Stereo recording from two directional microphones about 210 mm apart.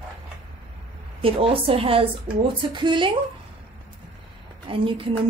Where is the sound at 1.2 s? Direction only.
25° right (ahead or behind).